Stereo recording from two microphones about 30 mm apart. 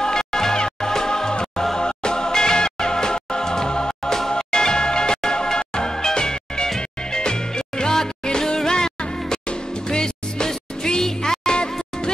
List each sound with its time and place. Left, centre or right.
0.0 s music: left